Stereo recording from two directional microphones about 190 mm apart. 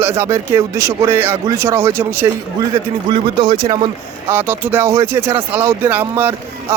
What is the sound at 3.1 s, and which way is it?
Speech, 25° right (ahead or behind).